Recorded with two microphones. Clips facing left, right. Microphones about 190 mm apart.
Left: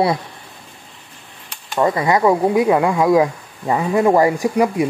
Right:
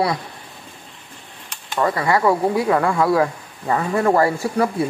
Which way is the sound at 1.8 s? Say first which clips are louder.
Left 3 dB; 20° left (ahead or behind).